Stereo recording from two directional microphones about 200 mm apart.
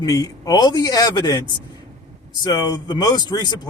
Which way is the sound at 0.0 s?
20° left (ahead or behind).